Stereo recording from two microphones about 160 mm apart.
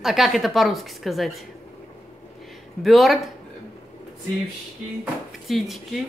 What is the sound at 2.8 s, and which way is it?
Speech, centre (ahead or behind).